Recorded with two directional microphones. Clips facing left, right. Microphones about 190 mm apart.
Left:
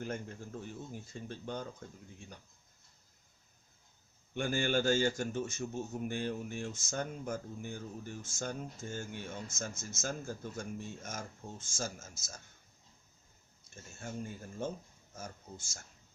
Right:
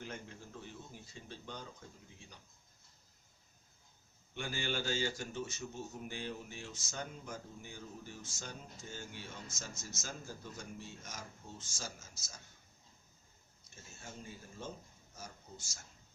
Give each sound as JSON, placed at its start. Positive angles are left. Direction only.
{"t": 0.0, "sound": "a man's voice", "side_deg": 45}
{"t": 4.4, "sound": "a man's voice", "side_deg": 50}
{"t": 14.0, "sound": "a man's voice", "side_deg": 50}